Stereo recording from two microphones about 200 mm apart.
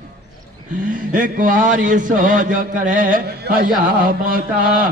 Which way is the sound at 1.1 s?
45° right (ahead or behind).